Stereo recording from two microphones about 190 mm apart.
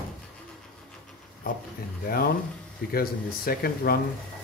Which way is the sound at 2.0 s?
55° left (ahead or behind).